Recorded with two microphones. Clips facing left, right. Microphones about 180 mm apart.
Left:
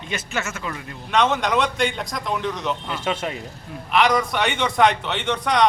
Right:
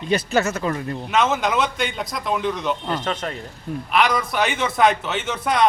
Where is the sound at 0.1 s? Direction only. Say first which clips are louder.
Right 9 dB; 35° right (ahead or behind).